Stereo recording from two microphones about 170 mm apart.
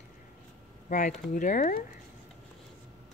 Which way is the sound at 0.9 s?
45° left (ahead or behind).